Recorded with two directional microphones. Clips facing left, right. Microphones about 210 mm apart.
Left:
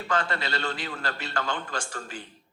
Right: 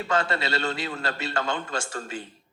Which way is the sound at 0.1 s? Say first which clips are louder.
Right 2 dB; 25° right (ahead or behind).